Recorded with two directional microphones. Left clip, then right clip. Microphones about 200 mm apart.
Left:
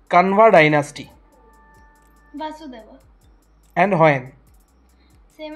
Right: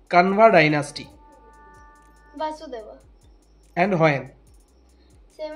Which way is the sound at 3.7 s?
5° left (ahead or behind).